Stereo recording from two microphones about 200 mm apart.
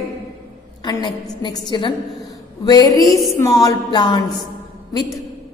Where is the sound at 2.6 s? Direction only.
20° left (ahead or behind).